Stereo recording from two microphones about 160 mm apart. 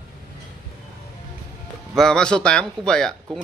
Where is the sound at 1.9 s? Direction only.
5° left (ahead or behind).